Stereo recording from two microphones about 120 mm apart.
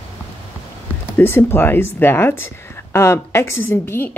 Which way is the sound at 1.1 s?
20° left (ahead or behind).